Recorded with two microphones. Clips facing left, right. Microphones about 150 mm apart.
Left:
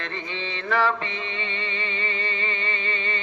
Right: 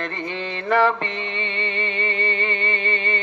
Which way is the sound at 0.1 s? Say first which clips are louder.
Right 4 dB; 5° right (ahead or behind).